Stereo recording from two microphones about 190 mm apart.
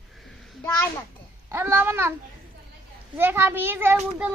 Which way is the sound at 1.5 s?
15° right (ahead or behind).